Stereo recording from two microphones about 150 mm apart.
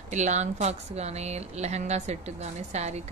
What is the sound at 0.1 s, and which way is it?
A woman's voice, 50° right (ahead or behind).